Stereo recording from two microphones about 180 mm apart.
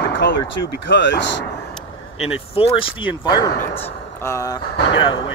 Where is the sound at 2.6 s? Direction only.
30° left (ahead or behind).